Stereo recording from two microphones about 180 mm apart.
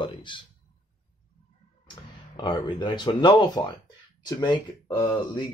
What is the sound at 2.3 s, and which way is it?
Speech, 25° left (ahead or behind).